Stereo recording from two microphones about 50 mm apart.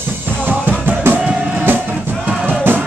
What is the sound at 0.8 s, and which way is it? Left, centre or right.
Music, right.